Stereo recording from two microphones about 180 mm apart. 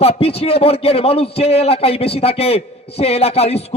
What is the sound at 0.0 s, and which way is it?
A man's voice, 35° left (ahead or behind).